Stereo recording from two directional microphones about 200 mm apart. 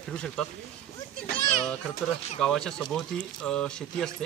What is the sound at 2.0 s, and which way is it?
A man's voice, 5° left (ahead or behind).